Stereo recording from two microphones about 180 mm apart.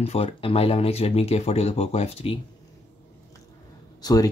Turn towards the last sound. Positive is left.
turn(degrees=20)  # may be behind; listen again after turning